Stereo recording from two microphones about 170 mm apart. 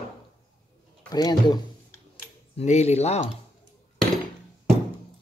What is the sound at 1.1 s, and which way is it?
Speech, 25° left (ahead or behind).